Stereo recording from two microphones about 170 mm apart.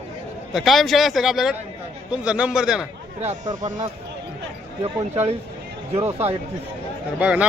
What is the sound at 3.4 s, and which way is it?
Speech, 25° right (ahead or behind).